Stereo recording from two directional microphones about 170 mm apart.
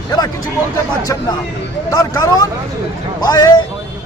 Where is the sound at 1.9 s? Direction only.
20° left (ahead or behind).